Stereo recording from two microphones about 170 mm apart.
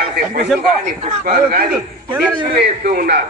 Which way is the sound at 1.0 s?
40° right (ahead or behind).